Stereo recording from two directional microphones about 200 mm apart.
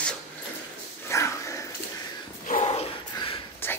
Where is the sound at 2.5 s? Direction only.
30° left (ahead or behind).